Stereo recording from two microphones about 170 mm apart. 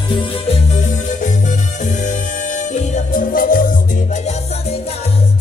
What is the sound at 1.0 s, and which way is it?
Music, 45° left (ahead or behind).